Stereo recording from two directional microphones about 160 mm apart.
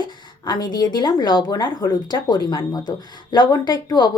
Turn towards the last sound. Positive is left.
turn(degrees=30)  # may be behind; listen again after turning